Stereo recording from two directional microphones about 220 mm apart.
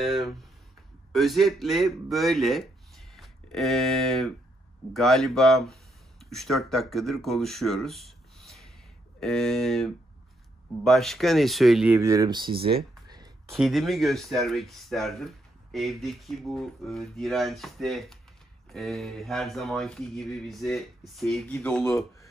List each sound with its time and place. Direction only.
0.0 s speech: centre (ahead or behind)
11.9 s speech: 15° right (ahead or behind)
13.5 s speech: centre (ahead or behind)